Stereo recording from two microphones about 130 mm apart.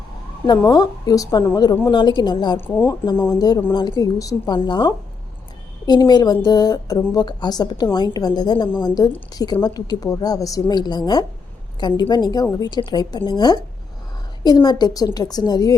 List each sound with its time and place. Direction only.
0.4 s a woman's voice: 30° left (ahead or behind)
2.6 s speech: 15° left (ahead or behind)
3.3 s a woman's voice: 30° left (ahead or behind)